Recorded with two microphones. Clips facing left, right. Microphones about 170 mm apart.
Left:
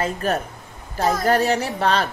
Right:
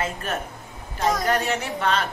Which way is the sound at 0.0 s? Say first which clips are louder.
Left 5 dB; 40° left (ahead or behind).